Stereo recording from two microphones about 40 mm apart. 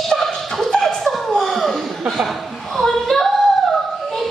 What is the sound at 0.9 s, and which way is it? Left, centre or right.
Chuckle, centre.